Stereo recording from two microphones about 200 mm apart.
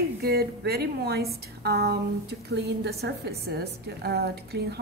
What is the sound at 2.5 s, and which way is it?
A woman's voice, 55° right (ahead or behind).